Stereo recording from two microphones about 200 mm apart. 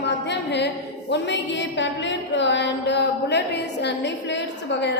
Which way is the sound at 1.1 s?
60° left (ahead or behind).